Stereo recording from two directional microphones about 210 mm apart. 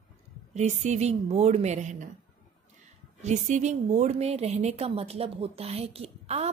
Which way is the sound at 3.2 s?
35° right (ahead or behind).